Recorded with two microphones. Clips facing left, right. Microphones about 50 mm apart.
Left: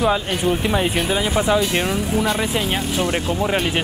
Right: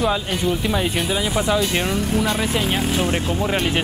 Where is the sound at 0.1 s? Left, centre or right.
Centre.